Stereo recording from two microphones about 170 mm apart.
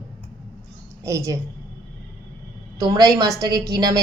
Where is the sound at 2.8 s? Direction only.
20° right (ahead or behind).